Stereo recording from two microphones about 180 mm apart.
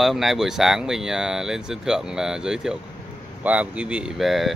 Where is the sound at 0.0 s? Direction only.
Centre (ahead or behind).